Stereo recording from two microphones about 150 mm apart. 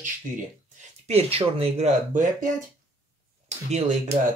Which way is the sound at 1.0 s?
40° right (ahead or behind).